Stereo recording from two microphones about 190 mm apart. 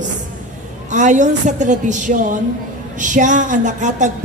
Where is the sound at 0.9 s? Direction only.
40° right (ahead or behind).